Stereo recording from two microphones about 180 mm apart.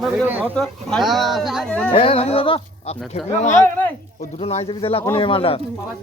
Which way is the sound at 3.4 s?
40° left (ahead or behind).